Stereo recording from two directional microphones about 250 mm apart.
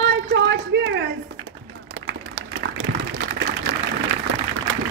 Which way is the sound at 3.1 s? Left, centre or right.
Right.